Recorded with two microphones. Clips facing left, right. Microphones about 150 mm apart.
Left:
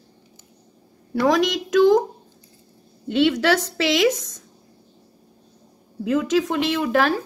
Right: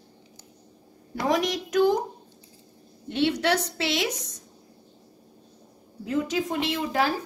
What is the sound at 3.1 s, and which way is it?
Speech, 90° left.